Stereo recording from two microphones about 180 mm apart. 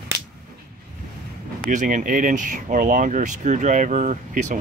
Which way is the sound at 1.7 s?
45° right (ahead or behind).